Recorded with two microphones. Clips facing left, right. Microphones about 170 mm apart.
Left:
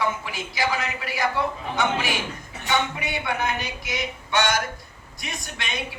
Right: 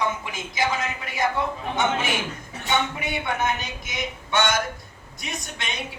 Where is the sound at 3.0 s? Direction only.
20° right (ahead or behind).